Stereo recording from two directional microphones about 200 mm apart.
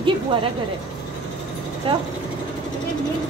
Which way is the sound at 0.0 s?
25° right (ahead or behind).